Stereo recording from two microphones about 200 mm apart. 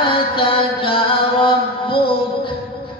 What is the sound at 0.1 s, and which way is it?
Mantra, 25° left (ahead or behind).